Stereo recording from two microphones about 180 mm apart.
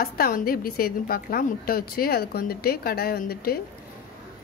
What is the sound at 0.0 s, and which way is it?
A woman's voice, 50° left (ahead or behind).